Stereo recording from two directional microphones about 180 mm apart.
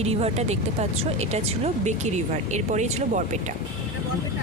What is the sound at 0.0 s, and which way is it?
Speech, 35° right (ahead or behind).